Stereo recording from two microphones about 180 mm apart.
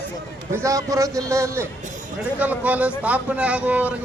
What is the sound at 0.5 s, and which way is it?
Speech, 20° right (ahead or behind).